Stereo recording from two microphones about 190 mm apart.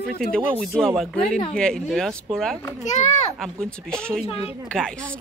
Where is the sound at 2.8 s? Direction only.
40° left (ahead or behind).